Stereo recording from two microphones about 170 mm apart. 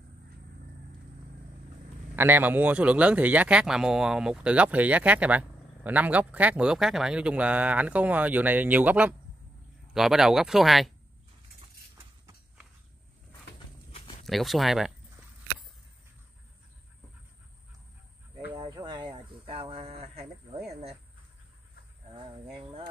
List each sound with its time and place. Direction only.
2.1 s speech: 10° right (ahead or behind)
14.2 s speech: centre (ahead or behind)
18.5 s a sound: 20° right (ahead or behind)
22.1 s cricket: 30° right (ahead or behind)